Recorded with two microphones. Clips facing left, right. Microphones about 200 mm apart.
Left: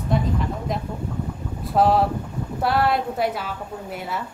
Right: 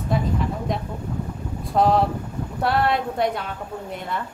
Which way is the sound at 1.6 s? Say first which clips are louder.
Even; 5° left (ahead or behind).